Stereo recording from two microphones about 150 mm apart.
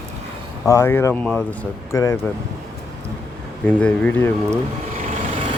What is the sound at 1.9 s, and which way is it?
Speech, 20° left (ahead or behind).